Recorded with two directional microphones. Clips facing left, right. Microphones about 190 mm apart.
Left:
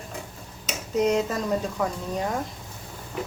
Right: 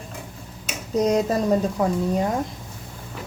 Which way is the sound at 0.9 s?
35° right (ahead or behind).